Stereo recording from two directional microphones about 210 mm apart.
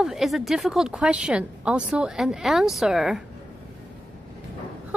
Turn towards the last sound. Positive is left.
turn(degrees=0)  # may be behind; listen again after turning